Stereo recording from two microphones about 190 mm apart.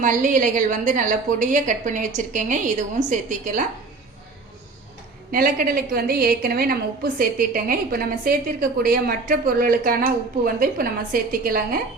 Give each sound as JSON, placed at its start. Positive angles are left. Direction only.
{"t": 0.0, "sound": "a woman's voice", "side_deg": -40}
{"t": 5.3, "sound": "a woman's voice", "side_deg": -50}